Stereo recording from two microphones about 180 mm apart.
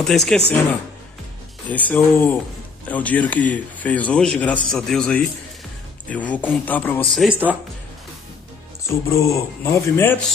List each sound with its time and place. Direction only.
0.0 s speech: centre (ahead or behind)
1.7 s speech: 10° left (ahead or behind)
7.2 s speech: 5° right (ahead or behind)
8.8 s speech: 15° left (ahead or behind)